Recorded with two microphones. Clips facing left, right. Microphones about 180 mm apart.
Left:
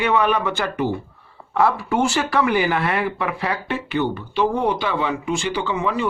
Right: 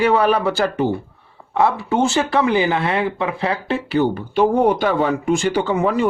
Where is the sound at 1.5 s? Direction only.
20° right (ahead or behind).